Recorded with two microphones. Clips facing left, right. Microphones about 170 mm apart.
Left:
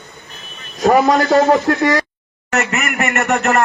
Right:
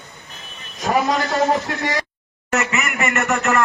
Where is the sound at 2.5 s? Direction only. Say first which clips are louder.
Left 3 dB; 65° left (ahead or behind).